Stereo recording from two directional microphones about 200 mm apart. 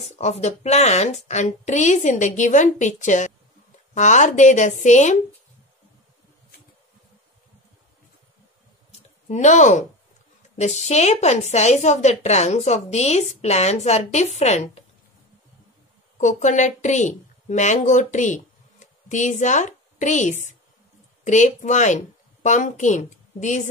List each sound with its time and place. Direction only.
0.1 s a woman's voice: 35° left (ahead or behind)
8.9 s a sound: 35° left (ahead or behind)
10.6 s a woman's voice: 35° left (ahead or behind)
16.2 s a woman's voice: 40° left (ahead or behind)